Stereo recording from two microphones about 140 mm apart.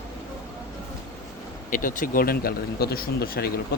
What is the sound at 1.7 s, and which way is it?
Speech, 70° left (ahead or behind).